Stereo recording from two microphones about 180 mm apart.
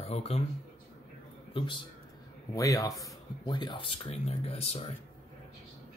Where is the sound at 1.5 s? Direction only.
25° left (ahead or behind).